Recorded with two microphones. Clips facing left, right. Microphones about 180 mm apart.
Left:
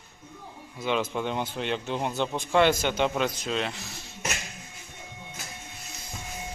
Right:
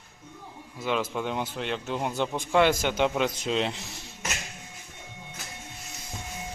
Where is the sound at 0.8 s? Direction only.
Centre (ahead or behind); by 3.8 s 20° right (ahead or behind).